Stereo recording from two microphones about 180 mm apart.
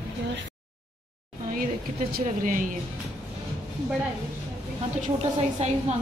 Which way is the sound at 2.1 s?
50° right (ahead or behind).